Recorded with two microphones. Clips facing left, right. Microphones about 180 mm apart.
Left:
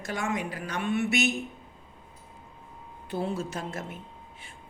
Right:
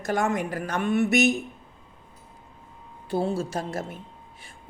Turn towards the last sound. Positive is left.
turn(degrees=-35)  # may be behind; listen again after turning